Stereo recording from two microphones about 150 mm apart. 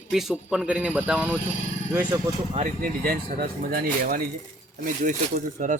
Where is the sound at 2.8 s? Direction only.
75° right (ahead or behind).